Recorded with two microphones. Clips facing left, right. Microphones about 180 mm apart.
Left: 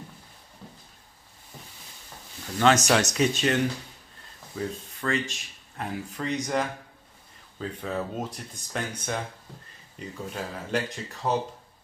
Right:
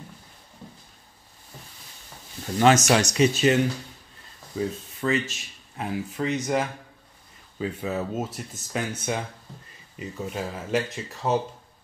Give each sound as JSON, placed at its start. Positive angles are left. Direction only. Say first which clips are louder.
{"t": 2.6, "sound": "speech", "louder": "right 2 dB", "side_deg": -5}